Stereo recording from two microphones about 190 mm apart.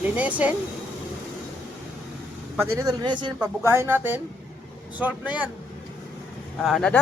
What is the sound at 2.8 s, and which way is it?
Speech, 20° right (ahead or behind).